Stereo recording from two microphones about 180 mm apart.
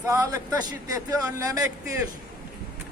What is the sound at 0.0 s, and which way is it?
Speech, 15° right (ahead or behind).